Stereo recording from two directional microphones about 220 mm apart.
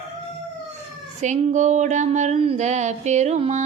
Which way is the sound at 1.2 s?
35° right (ahead or behind).